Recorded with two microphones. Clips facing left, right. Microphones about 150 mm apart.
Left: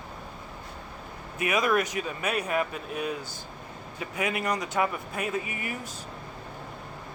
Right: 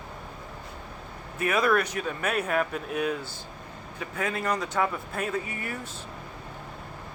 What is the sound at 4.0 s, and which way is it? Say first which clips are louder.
Speech: left 1 dB; 15° left (ahead or behind).